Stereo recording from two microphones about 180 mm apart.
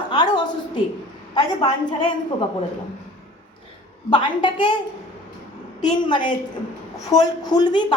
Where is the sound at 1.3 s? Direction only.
25° left (ahead or behind).